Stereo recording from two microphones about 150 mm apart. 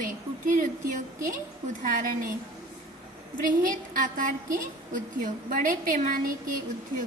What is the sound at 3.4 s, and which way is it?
A woman's voice, 65° right (ahead or behind).